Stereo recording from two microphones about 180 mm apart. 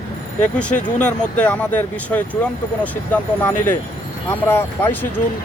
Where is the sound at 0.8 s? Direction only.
45° left (ahead or behind).